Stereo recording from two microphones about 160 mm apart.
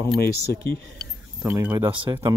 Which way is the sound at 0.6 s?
75° left (ahead or behind).